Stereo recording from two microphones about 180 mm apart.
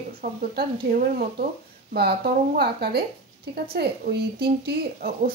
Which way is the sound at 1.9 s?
60° right (ahead or behind).